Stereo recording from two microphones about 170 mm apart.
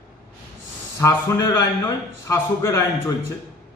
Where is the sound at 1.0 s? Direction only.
20° left (ahead or behind).